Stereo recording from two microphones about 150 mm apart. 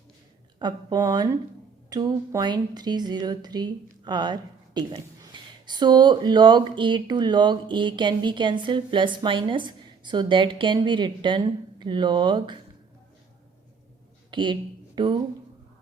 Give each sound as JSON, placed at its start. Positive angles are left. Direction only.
{"t": 0.6, "sound": "speech", "side_deg": -25}
{"t": 14.3, "sound": "a woman's voice", "side_deg": -30}